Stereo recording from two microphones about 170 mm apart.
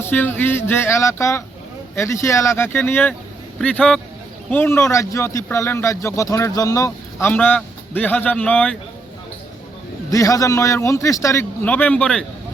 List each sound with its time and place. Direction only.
0.0 s speech: 10° left (ahead or behind)
10.1 s speech: 20° left (ahead or behind)